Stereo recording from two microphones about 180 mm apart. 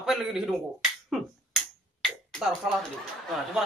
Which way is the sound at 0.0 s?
Centre (ahead or behind).